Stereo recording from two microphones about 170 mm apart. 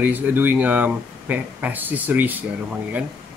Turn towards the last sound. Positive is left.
turn(degrees=-10)  # may be behind; listen again after turning